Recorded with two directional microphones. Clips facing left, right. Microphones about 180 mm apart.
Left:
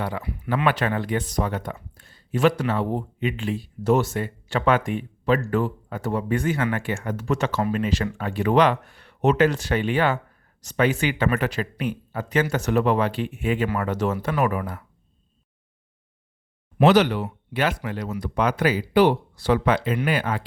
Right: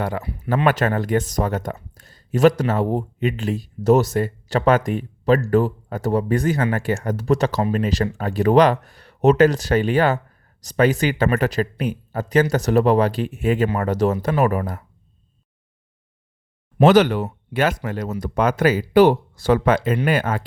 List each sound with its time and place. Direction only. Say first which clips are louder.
0.0 s speech: right 4 dB; 45° right (ahead or behind)
16.8 s speech: right 3 dB; 50° right (ahead or behind)